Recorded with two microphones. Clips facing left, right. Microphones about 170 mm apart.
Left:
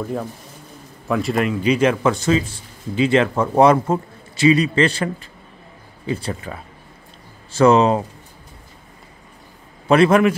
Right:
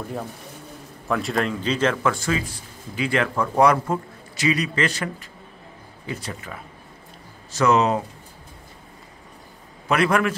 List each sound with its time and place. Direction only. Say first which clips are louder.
1.0 s a man's voice: left 4 dB; centre (ahead or behind); by 8.0 s 30° left (ahead or behind)
9.8 s a man's voice: left 7 dB; 25° left (ahead or behind)